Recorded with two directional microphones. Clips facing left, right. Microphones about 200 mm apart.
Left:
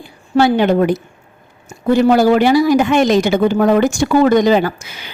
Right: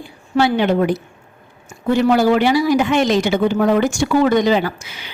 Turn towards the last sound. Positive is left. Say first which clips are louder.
# left 3 dB
turn(degrees=45)  # may be behind; listen again after turning